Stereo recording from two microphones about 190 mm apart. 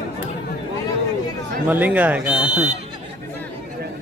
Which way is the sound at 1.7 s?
10° right (ahead or behind).